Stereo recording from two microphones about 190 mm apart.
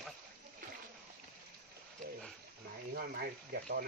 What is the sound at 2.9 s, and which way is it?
Speech, 55° right (ahead or behind).